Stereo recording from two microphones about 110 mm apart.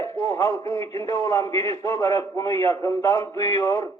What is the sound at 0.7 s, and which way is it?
A man's voice, 30° left (ahead or behind).